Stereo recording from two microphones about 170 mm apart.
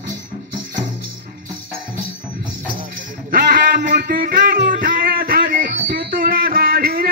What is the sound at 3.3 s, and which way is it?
Music, 60° right (ahead or behind).